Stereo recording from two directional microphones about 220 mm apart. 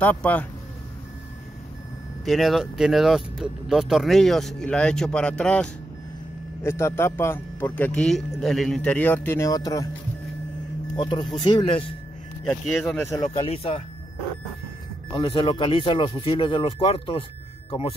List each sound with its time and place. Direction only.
0.0 s a man's voice: 5° left (ahead or behind)
2.2 s a man's voice: centre (ahead or behind); by 9.8 s 15° left (ahead or behind)
11.0 s speech: 20° left (ahead or behind)
12.4 s speech: 10° left (ahead or behind); by 13.8 s 25° left (ahead or behind)
15.1 s speech: 20° left (ahead or behind)